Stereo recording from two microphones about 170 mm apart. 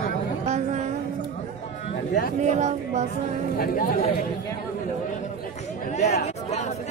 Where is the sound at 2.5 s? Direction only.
40° right (ahead or behind).